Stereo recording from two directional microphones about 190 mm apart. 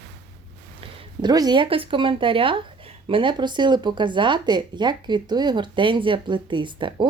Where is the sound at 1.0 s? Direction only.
20° right (ahead or behind).